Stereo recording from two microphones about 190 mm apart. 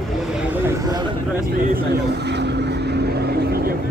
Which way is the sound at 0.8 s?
20° right (ahead or behind).